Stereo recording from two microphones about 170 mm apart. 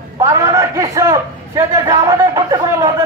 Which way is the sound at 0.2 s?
20° right (ahead or behind).